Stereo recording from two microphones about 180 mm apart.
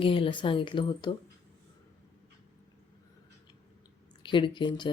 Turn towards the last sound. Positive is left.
turn(degrees=25)  # may be behind; listen again after turning